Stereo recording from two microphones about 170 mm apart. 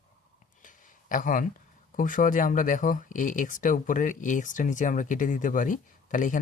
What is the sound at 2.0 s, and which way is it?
Speech, 50° left (ahead or behind).